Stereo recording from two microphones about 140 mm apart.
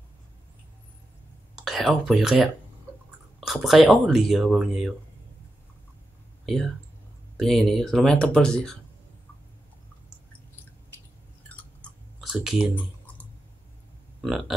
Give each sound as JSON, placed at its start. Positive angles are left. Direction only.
{"t": 1.6, "sound": "speech", "side_deg": 0}
{"t": 6.4, "sound": "speech", "side_deg": 0}
{"t": 11.4, "sound": "chewing", "side_deg": 10}
{"t": 12.2, "sound": "speech", "side_deg": 0}